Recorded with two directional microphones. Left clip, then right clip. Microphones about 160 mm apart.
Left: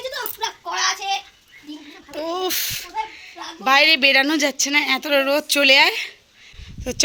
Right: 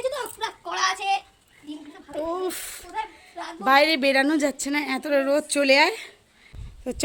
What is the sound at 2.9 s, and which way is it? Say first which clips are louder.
A woman's voice: left 4 dB; 15° right (ahead or behind).